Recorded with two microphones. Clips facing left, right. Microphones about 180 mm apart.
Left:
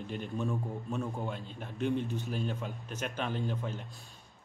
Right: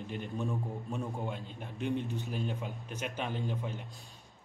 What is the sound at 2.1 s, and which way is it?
Speech, 15° right (ahead or behind).